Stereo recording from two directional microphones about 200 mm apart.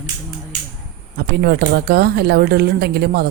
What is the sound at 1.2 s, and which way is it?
A woman's voice, 50° right (ahead or behind).